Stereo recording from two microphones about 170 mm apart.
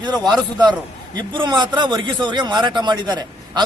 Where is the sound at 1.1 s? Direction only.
25° right (ahead or behind).